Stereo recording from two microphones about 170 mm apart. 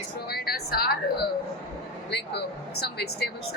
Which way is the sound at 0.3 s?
65° left (ahead or behind).